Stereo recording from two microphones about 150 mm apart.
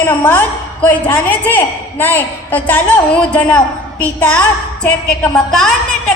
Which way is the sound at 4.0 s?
10° left (ahead or behind).